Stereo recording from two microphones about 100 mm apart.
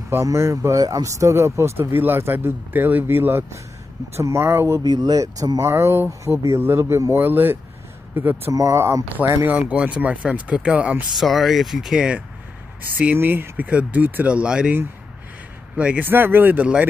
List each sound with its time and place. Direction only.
0.1 s speech: 30° right (ahead or behind)
4.8 s speech: 40° right (ahead or behind); by 8.4 s 20° right (ahead or behind)
8.5 s speech: 30° right (ahead or behind); by 11.1 s 10° right (ahead or behind)
11.1 s speech: centre (ahead or behind)
13.0 s speech: 20° right (ahead or behind)
15.8 s speech: 15° right (ahead or behind)